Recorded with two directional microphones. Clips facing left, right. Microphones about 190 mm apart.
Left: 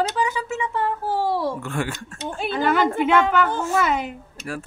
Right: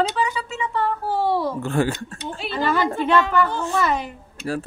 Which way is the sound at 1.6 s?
35° right (ahead or behind).